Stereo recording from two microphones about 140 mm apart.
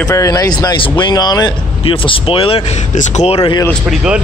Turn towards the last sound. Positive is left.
turn(degrees=-5)  # may be behind; listen again after turning